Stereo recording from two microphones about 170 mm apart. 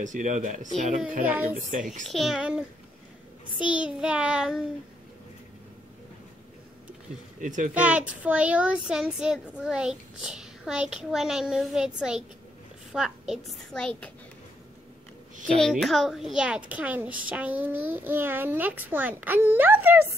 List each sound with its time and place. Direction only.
0.0 s speech: 45° right (ahead or behind)
2.0 s speech: centre (ahead or behind)
3.6 s speech: 5° right (ahead or behind)
7.3 s speech: 50° right (ahead or behind)
7.7 s speech: 10° right (ahead or behind)
15.4 s a child's voice: centre (ahead or behind)